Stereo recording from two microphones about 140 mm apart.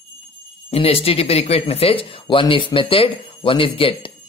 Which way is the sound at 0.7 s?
45° left (ahead or behind).